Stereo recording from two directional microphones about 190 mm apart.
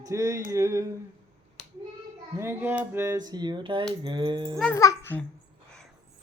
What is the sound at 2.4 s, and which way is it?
Speech, 10° right (ahead or behind).